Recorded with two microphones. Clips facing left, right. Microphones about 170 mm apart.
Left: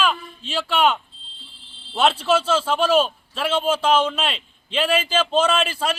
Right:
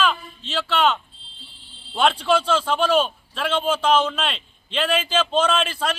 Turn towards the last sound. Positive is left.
turn(degrees=10)  # may be behind; listen again after turning